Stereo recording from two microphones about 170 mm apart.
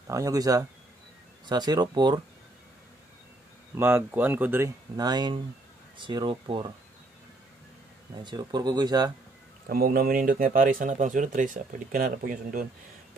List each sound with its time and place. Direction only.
0.1 s speech: 20° right (ahead or behind)
3.7 s speech: 10° right (ahead or behind); by 6.7 s 30° right (ahead or behind)
8.2 s speech: 25° right (ahead or behind)
9.7 s speech: 60° right (ahead or behind)